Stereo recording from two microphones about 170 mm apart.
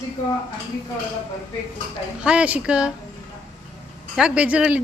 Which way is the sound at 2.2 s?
5° right (ahead or behind).